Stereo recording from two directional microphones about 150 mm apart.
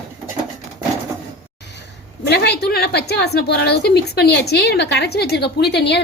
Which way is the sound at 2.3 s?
90° left.